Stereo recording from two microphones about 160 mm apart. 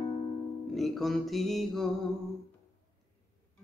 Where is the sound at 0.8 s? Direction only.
Centre (ahead or behind).